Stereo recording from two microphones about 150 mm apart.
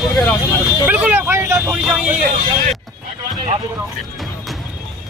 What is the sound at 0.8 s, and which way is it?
Speech, 10° right (ahead or behind).